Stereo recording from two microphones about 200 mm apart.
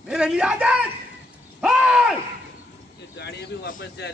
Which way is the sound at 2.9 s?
60° left (ahead or behind).